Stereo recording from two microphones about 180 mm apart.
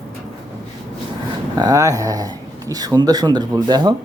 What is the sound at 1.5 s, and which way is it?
Speech, 20° right (ahead or behind).